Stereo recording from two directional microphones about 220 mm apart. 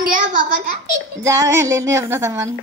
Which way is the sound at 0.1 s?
35° right (ahead or behind).